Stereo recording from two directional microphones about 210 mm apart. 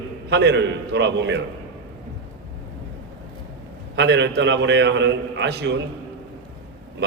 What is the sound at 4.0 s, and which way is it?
A man's voice, 55° right (ahead or behind).